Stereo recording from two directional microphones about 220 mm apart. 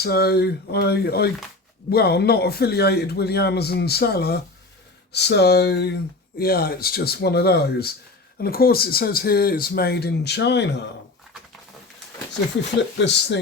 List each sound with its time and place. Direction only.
0.0 s speech: 45° left (ahead or behind)
13.0 s speech: 55° left (ahead or behind)